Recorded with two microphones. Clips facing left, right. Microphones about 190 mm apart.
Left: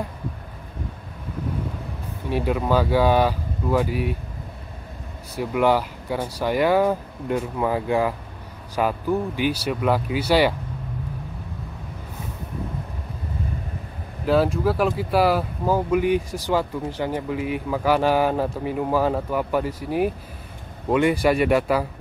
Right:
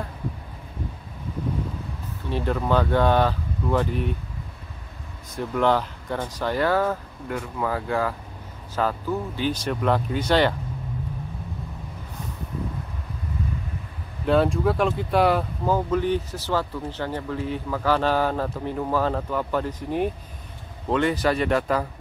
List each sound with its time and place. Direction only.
2.2 s speech: 10° left (ahead or behind)
5.3 s speech: 10° left (ahead or behind)
14.2 s speech: 5° left (ahead or behind)